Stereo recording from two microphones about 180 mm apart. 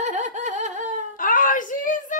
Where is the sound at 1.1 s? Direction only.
50° left (ahead or behind).